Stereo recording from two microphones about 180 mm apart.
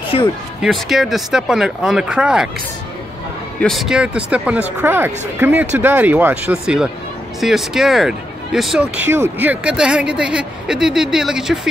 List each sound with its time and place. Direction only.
0.1 s speech: 35° left (ahead or behind)
0.6 s speech: centre (ahead or behind)
3.5 s speech: centre (ahead or behind)